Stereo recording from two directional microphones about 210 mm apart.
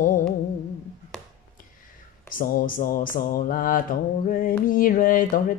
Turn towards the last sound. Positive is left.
turn(degrees=40)  # may be behind; listen again after turning